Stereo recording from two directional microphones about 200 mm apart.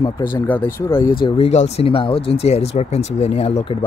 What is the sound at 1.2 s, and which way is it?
Speech, 35° left (ahead or behind).